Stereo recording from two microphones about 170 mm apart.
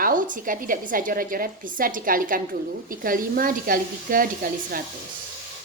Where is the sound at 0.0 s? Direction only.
55° right (ahead or behind).